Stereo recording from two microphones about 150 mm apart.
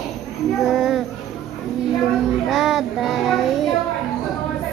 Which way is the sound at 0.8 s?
Centre (ahead or behind).